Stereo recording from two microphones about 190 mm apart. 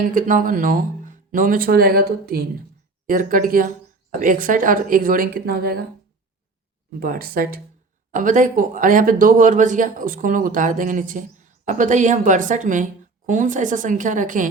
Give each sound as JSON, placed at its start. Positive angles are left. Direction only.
{"t": 0.0, "sound": "speech", "side_deg": -45}
{"t": 3.1, "sound": "speech", "side_deg": -45}
{"t": 7.0, "sound": "speech", "side_deg": -50}